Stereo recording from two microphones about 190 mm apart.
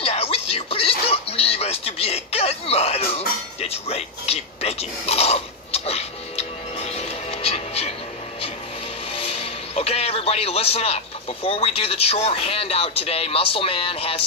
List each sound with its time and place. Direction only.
0.0 s music: 30° left (ahead or behind)
9.1 s a man's voice: 30° left (ahead or behind)